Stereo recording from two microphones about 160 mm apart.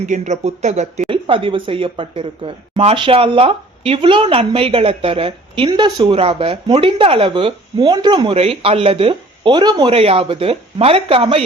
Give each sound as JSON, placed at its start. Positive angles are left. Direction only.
{"t": 0.0, "sound": "speech", "side_deg": -50}
{"t": 1.0, "sound": "speech", "side_deg": -35}